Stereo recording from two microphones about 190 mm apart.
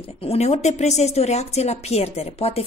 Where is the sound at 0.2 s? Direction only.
35° left (ahead or behind).